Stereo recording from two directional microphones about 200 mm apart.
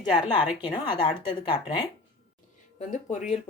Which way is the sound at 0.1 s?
20° left (ahead or behind).